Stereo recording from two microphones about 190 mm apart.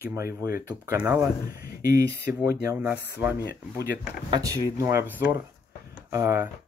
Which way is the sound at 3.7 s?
15° right (ahead or behind).